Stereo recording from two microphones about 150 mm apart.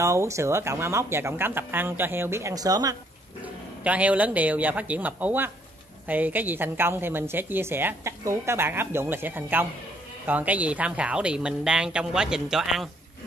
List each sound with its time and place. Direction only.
0.0 s a woman's voice: 20° right (ahead or behind)
3.8 s a woman's voice: 10° right (ahead or behind)